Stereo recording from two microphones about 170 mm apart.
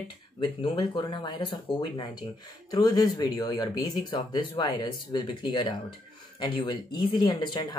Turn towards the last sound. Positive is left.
turn(degrees=25)  # may be behind; listen again after turning